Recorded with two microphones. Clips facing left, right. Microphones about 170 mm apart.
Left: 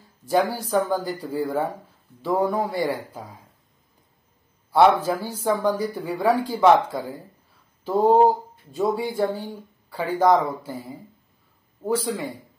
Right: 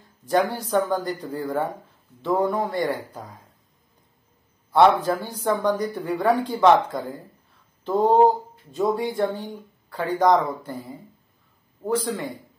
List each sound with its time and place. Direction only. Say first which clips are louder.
0.3 s speech: even; 5° left (ahead or behind)
4.7 s speech: even; 5° left (ahead or behind)
7.8 s a sound: left 1 dB; 5° left (ahead or behind)
8.7 s speech: even; centre (ahead or behind)